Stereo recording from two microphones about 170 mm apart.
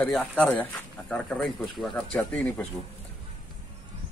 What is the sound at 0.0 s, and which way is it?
Speech, 5° left (ahead or behind).